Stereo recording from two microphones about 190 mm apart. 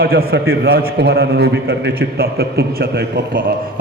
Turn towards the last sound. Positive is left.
turn(degrees=-55)  # may be behind; listen again after turning